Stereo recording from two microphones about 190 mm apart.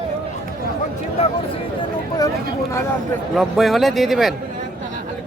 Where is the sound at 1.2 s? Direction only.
35° left (ahead or behind).